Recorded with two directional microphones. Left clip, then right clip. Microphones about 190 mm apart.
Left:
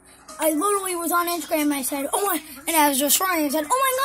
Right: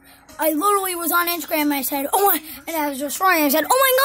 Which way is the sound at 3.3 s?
50° right (ahead or behind).